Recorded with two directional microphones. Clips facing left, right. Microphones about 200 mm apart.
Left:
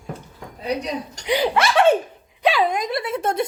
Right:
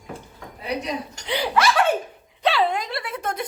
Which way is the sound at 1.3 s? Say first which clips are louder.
Left 2 dB; 20° left (ahead or behind).